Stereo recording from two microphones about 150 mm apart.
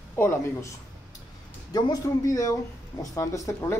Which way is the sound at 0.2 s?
15° left (ahead or behind).